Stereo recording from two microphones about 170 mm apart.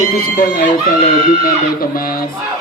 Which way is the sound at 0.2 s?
60° left (ahead or behind).